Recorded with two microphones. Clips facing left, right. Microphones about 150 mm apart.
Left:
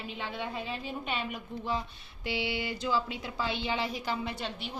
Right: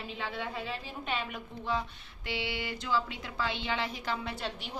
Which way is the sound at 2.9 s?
15° left (ahead or behind).